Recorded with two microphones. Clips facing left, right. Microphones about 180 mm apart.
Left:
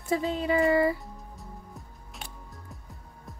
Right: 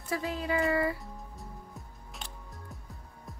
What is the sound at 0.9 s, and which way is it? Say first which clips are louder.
Music: even; centre (ahead or behind).